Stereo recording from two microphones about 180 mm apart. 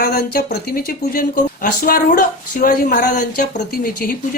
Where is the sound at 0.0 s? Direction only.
55° left (ahead or behind).